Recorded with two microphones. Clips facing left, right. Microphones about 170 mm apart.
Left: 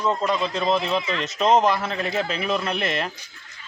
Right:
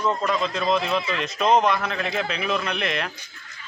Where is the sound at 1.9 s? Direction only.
40° left (ahead or behind).